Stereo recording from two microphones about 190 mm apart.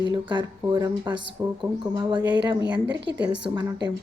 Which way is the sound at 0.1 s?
20° right (ahead or behind).